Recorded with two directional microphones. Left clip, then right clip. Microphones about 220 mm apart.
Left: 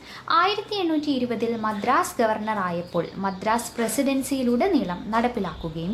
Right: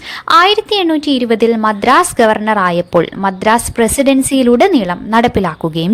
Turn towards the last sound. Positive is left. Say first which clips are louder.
# right 15 dB
turn(degrees=-45)  # may be behind; listen again after turning